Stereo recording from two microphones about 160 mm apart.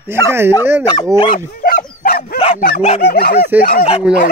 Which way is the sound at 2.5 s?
70° left (ahead or behind).